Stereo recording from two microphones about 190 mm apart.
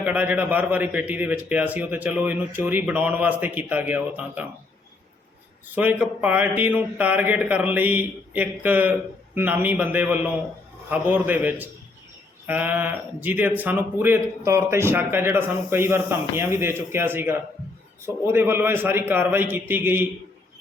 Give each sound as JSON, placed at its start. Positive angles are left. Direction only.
{"t": 0.0, "sound": "speech", "side_deg": -10}
{"t": 5.7, "sound": "speech", "side_deg": -10}